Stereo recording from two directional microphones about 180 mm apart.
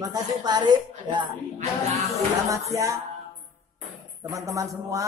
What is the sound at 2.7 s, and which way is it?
Speech, 15° right (ahead or behind).